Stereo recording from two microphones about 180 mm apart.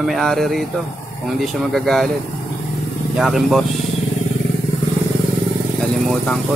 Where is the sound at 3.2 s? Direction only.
Centre (ahead or behind).